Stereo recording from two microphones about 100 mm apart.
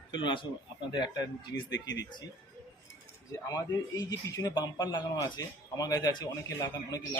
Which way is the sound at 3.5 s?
40° left (ahead or behind).